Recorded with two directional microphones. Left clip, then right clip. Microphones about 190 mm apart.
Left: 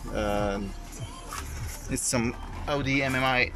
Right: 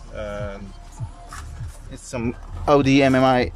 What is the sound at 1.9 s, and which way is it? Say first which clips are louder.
Speech: left 9 dB; 10° left (ahead or behind).